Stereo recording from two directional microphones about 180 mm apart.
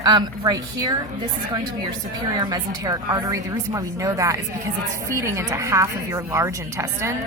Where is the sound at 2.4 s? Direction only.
20° right (ahead or behind).